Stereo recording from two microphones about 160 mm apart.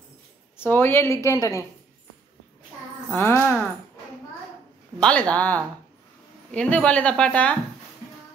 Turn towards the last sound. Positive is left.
turn(degrees=10)  # may be behind; listen again after turning